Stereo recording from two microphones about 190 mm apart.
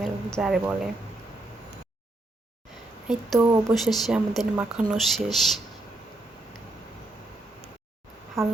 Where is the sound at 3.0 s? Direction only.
Centre (ahead or behind).